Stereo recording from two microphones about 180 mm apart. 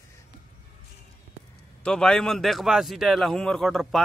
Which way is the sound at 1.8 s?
5° left (ahead or behind).